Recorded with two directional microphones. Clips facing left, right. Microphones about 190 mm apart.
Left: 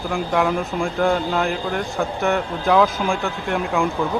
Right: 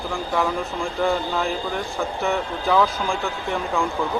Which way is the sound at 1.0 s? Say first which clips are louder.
Left 2 dB; centre (ahead or behind).